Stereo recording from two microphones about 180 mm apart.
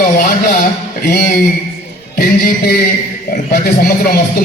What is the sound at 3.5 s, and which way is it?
Speech, 60° left (ahead or behind).